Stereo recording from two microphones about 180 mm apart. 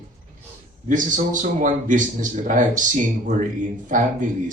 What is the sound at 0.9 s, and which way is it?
A man's voice, 45° right (ahead or behind).